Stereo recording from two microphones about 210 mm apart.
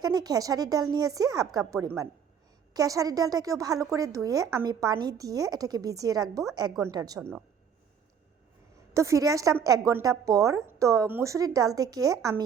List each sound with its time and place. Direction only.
0.0 s a woman's voice: 20° right (ahead or behind)
7.2 s a woman's voice: 5° right (ahead or behind)
8.9 s a woman's voice: 15° right (ahead or behind)